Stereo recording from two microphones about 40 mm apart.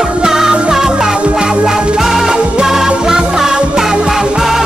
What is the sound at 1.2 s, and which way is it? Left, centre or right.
Music, right.